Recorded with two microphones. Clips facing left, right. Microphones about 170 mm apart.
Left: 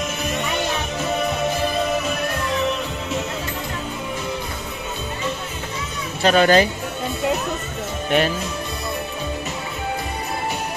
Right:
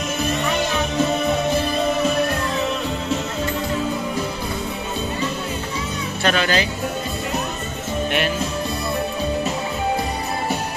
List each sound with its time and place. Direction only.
6.2 s speech: 45° left (ahead or behind)